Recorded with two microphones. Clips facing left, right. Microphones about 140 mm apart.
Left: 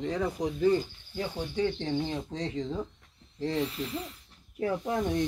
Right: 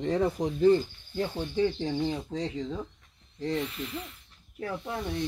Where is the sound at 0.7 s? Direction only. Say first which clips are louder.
Right 2 dB; 10° left (ahead or behind).